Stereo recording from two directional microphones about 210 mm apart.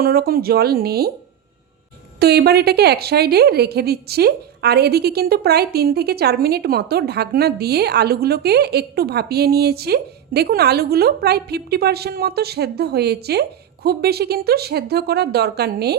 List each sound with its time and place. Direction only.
0.0 s a woman's voice: 45° right (ahead or behind)
2.1 s a woman's voice: 50° right (ahead or behind)